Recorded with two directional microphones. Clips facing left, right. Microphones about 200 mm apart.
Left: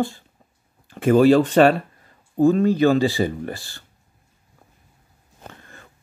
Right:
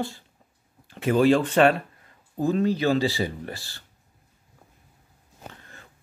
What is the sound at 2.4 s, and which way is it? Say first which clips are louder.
Speech: left 7 dB; 50° left (ahead or behind).